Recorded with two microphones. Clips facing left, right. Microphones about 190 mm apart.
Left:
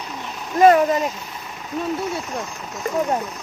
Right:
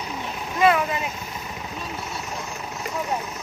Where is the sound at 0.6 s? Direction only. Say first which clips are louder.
Left 7 dB; 40° left (ahead or behind).